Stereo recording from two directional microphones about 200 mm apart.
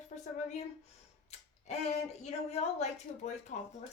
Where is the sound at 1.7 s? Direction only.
35° left (ahead or behind).